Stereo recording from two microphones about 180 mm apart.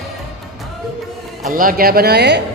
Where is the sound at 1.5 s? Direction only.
50° right (ahead or behind); by 2.4 s 70° right (ahead or behind).